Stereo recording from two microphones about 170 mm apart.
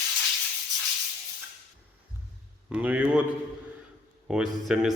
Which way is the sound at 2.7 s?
10° right (ahead or behind).